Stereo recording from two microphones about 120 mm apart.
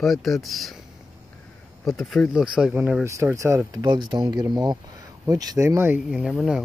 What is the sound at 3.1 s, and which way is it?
Speech, 25° right (ahead or behind).